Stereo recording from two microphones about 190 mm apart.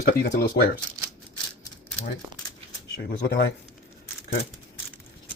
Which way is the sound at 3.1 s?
55° left (ahead or behind).